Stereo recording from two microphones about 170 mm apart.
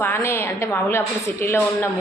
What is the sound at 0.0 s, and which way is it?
A woman's voice, 15° left (ahead or behind).